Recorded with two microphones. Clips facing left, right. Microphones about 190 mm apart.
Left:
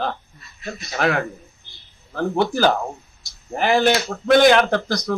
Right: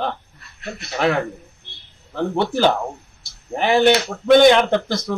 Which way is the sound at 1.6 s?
70° right (ahead or behind).